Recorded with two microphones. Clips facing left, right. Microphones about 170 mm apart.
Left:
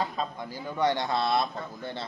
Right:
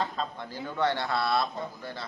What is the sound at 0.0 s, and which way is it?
A man's voice, 10° left (ahead or behind).